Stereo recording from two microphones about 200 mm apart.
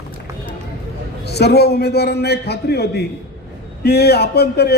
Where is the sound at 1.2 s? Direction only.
55° left (ahead or behind).